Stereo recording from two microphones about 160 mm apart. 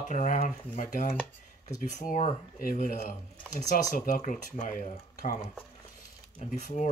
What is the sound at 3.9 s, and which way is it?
Speech, 60° left (ahead or behind).